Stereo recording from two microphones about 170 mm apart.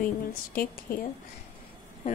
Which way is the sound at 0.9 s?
55° left (ahead or behind).